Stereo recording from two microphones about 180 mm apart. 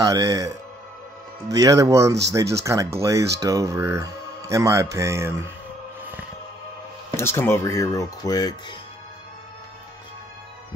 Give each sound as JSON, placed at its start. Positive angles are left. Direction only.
{"t": 0.0, "sound": "speech", "side_deg": -20}
{"t": 1.5, "sound": "speech", "side_deg": -20}
{"t": 7.2, "sound": "speech", "side_deg": 15}